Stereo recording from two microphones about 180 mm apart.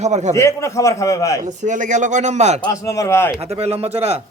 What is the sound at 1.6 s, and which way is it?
Speech, 45° right (ahead or behind).